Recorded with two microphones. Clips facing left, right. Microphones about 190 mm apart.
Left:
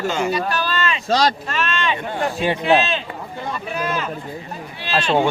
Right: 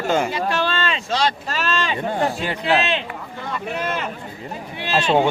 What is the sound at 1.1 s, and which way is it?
Speech, 40° left (ahead or behind).